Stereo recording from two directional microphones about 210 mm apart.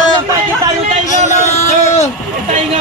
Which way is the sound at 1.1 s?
35° left (ahead or behind).